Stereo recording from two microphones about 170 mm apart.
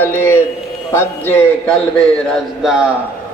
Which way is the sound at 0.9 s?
10° left (ahead or behind).